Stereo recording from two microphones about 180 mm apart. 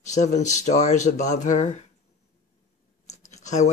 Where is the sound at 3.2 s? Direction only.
40° left (ahead or behind).